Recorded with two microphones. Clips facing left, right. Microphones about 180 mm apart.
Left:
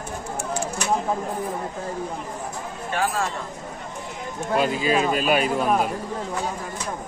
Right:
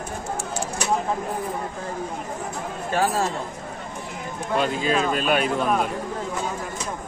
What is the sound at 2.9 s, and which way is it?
Speech, 40° right (ahead or behind).